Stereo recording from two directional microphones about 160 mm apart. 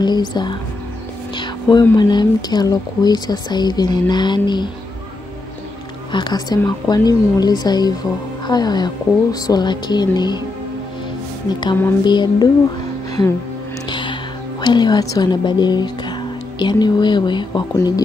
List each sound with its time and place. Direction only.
0.0 s speech: 25° left (ahead or behind)
6.1 s speech: 25° left (ahead or behind)
12.0 s speech: 25° left (ahead or behind)
13.8 s music: 30° left (ahead or behind)
14.6 s a woman's voice: 25° left (ahead or behind)